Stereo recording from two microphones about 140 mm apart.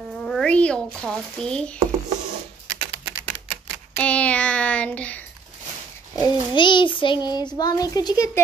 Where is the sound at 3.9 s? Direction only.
10° left (ahead or behind).